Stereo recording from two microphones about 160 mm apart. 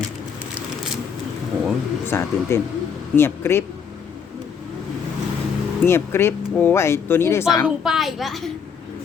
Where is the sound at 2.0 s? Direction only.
15° left (ahead or behind).